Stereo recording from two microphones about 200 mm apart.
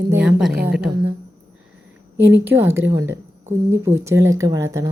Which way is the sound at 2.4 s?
10° right (ahead or behind).